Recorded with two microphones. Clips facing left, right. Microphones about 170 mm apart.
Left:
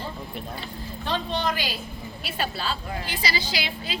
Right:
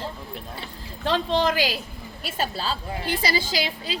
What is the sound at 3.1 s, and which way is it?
Speech, 50° right (ahead or behind).